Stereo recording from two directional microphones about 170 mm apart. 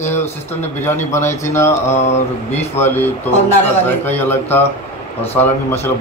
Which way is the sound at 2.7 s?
10° left (ahead or behind).